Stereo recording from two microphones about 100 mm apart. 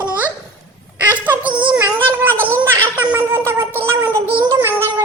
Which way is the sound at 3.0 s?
20° right (ahead or behind).